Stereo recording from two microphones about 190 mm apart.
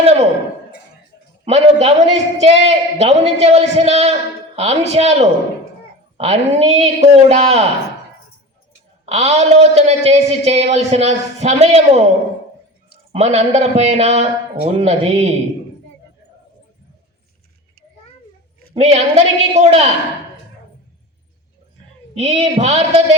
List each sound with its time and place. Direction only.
0.0 s speech: 35° right (ahead or behind)
1.5 s speech: 35° right (ahead or behind)
9.0 s speech: 35° right (ahead or behind)
13.1 s speech: 35° right (ahead or behind)
18.7 s speech: 35° right (ahead or behind)
22.1 s speech: 35° right (ahead or behind)